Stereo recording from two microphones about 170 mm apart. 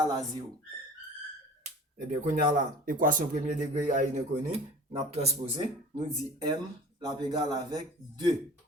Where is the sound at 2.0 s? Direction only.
50° right (ahead or behind).